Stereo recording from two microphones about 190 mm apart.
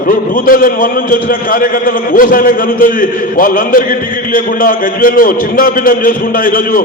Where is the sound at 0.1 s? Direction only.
45° left (ahead or behind).